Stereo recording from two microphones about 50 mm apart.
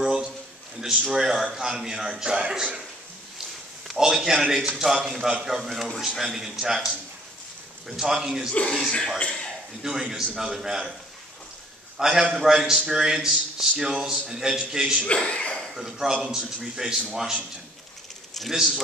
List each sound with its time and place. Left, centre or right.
0.0 s a sound: centre
1.1 s a man's voice: centre
3.8 s a man's voice: centre
7.9 s a man's voice: centre
8.8 s a man's voice: left
9.8 s a man's voice: centre
12.0 s a man's voice: centre
15.0 s speech: left
15.7 s a man's voice: centre